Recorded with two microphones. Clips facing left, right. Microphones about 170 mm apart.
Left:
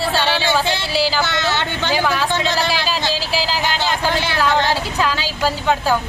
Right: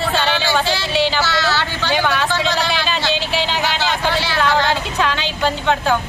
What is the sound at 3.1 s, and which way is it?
Vehicle, centre (ahead or behind).